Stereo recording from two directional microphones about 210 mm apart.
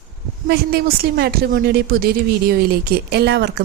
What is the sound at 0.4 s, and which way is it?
A woman's voice, 50° right (ahead or behind).